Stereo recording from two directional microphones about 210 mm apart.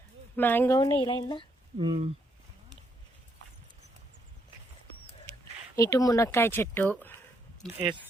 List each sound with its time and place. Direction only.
0.3 s speech: 10° left (ahead or behind)
1.8 s speech: 25° right (ahead or behind)
5.7 s speech: 15° left (ahead or behind)